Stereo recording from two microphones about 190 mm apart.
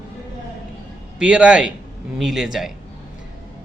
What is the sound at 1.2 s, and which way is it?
A man's voice, 5° right (ahead or behind).